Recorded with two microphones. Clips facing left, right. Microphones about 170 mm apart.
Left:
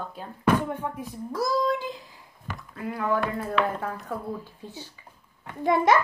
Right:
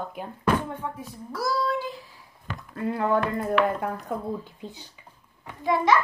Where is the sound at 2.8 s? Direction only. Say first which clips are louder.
Right 3 dB; 25° right (ahead or behind).